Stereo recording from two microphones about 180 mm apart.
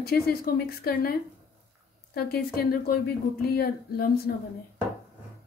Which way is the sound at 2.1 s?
60° left (ahead or behind).